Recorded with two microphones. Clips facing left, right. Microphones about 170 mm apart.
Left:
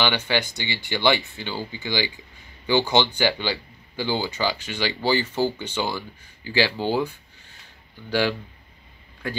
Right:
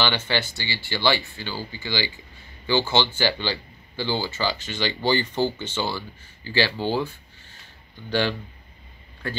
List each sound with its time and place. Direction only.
0.0 s speech: 15° left (ahead or behind)